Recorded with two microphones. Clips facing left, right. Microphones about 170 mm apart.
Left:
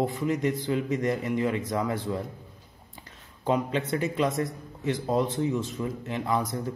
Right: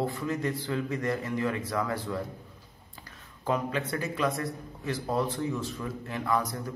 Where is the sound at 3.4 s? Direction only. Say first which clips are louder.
Left 3 dB; 20° left (ahead or behind).